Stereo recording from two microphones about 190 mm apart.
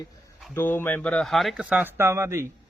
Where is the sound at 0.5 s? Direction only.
10° left (ahead or behind).